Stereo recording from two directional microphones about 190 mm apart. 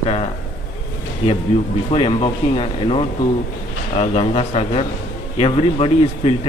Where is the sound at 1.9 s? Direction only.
30° left (ahead or behind).